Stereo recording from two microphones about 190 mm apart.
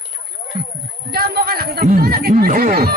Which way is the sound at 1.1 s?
55° right (ahead or behind).